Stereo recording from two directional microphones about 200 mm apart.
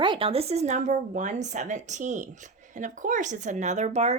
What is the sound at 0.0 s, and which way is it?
Speech, 25° right (ahead or behind).